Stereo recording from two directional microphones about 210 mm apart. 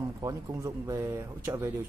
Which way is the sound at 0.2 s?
15° right (ahead or behind).